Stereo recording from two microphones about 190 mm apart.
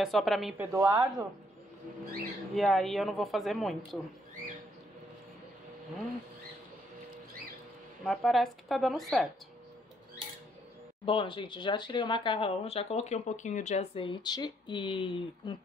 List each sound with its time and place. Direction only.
0.0 s a woman's voice: centre (ahead or behind)
0.7 s speech: 15° right (ahead or behind)
2.5 s a woman's voice: centre (ahead or behind)
8.0 s a woman's voice: centre (ahead or behind)
11.1 s speech: 25° left (ahead or behind)